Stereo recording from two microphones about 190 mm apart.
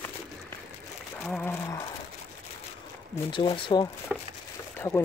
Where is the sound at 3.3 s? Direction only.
25° left (ahead or behind).